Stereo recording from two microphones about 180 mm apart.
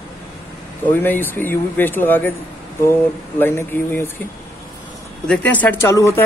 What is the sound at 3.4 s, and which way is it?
Speech, 10° left (ahead or behind).